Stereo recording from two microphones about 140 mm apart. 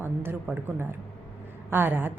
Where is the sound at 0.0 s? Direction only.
15° right (ahead or behind).